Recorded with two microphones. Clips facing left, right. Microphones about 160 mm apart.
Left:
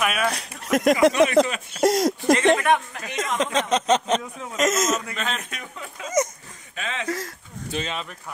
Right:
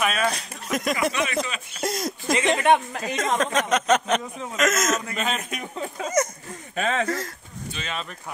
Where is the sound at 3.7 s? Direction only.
30° left (ahead or behind).